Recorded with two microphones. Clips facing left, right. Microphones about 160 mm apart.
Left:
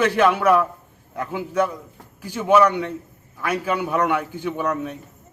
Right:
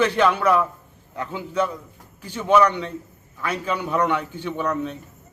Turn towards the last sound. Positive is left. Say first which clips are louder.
# left 1 dB
turn(degrees=10)  # may be behind; listen again after turning